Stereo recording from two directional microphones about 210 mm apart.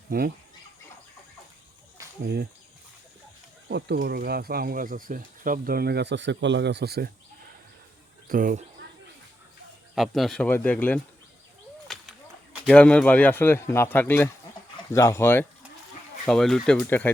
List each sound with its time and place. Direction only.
0.1 s speech: 45° right (ahead or behind)
2.2 s speech: 50° right (ahead or behind)
3.7 s speech: 55° right (ahead or behind)
8.3 s speech: 40° right (ahead or behind)
9.9 s a man's voice: centre (ahead or behind)
11.9 s whip: centre (ahead or behind)
12.6 s a man's voice: 5° left (ahead or behind)